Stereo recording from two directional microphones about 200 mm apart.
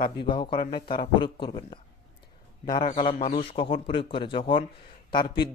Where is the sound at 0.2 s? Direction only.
25° left (ahead or behind).